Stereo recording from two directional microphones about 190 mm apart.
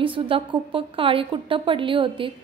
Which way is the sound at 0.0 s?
25° right (ahead or behind).